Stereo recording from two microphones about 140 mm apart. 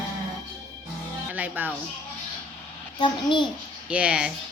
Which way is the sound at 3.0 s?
35° left (ahead or behind).